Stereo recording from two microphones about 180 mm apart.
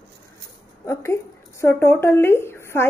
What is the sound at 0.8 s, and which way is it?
Speech, 15° left (ahead or behind).